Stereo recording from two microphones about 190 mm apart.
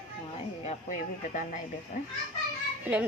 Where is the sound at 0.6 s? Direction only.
40° left (ahead or behind).